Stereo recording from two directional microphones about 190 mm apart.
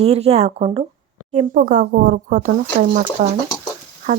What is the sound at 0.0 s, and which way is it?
Speech, 35° right (ahead or behind).